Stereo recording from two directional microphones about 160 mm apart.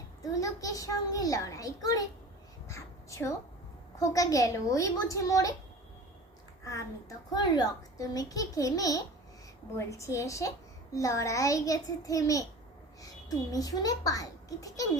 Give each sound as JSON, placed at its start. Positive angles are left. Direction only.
{"t": 0.2, "sound": "a child's voice", "side_deg": 20}
{"t": 2.6, "sound": "crow", "side_deg": 20}
{"t": 4.0, "sound": "a child's voice", "side_deg": 20}
{"t": 7.3, "sound": "a child's voice", "side_deg": 25}
{"t": 13.5, "sound": "a child's voice", "side_deg": 25}